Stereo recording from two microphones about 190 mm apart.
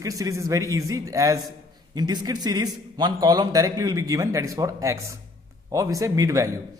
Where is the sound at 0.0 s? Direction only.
20° right (ahead or behind).